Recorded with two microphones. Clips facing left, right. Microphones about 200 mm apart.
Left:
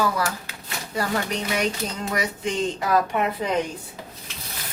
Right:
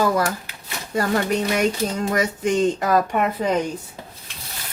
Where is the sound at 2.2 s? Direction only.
45° right (ahead or behind).